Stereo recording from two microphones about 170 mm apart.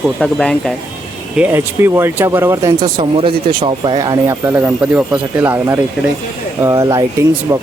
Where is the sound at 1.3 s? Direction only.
10° right (ahead or behind).